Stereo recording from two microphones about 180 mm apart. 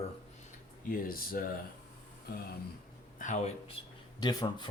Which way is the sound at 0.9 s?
55° left (ahead or behind).